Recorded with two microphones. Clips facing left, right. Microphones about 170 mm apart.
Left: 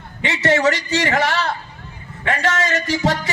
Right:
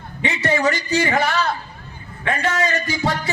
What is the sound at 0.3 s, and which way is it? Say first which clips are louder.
A man's voice: left 3 dB; 85° left.